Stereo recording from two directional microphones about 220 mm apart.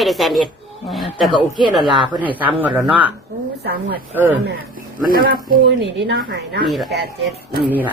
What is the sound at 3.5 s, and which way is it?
Speech, 45° right (ahead or behind).